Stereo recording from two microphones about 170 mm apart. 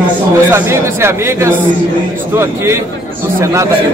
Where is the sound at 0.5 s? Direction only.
15° right (ahead or behind).